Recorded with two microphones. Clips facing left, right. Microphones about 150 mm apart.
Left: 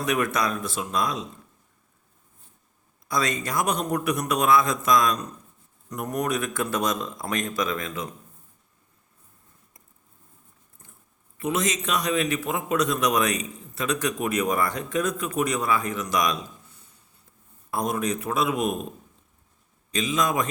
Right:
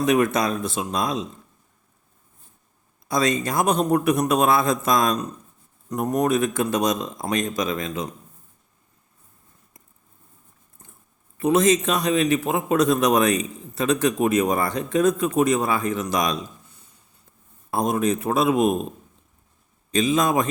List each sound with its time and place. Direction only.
0.0 s a man's voice: 25° right (ahead or behind)
3.1 s a man's voice: 25° right (ahead or behind)
11.3 s a man's voice: 30° right (ahead or behind)
17.7 s a man's voice: 25° right (ahead or behind)
19.9 s a man's voice: 30° right (ahead or behind)